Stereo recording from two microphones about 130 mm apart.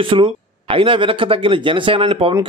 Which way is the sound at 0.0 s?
40° right (ahead or behind).